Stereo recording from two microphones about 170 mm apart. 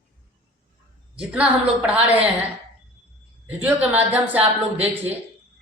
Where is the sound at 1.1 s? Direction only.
5° right (ahead or behind).